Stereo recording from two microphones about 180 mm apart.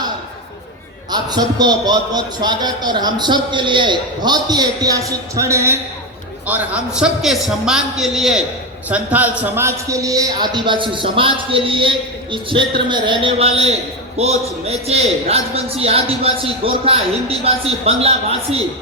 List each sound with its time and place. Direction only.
1.1 s a man's voice: 25° right (ahead or behind)